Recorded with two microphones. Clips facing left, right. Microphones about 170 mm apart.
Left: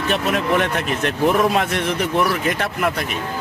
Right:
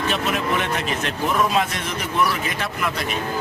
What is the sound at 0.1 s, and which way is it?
Speech, 55° left (ahead or behind).